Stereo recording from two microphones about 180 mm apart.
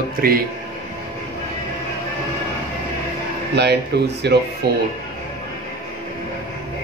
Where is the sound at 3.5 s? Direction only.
65° right (ahead or behind).